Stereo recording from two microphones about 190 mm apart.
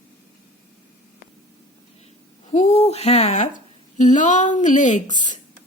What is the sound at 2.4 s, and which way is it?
A woman's voice, 35° left (ahead or behind).